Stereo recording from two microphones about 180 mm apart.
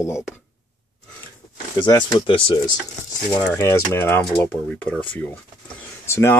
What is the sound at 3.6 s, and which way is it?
Speech, 15° left (ahead or behind).